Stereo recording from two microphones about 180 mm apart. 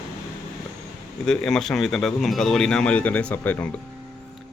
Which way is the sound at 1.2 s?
5° left (ahead or behind).